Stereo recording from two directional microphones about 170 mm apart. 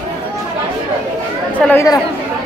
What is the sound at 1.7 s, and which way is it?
Chatter, 15° left (ahead or behind).